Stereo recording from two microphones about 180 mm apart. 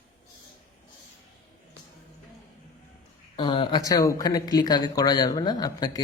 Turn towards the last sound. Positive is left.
turn(degrees=20)  # may be behind; listen again after turning